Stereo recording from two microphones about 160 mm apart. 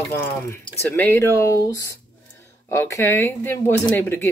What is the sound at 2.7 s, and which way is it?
Speech, 15° left (ahead or behind).